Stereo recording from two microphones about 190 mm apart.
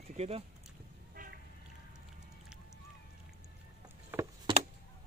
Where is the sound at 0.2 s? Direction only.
35° right (ahead or behind).